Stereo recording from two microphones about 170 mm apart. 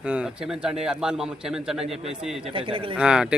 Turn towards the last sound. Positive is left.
turn(degrees=-5)  # may be behind; listen again after turning